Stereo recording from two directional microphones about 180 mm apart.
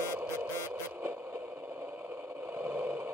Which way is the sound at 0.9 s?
10° right (ahead or behind).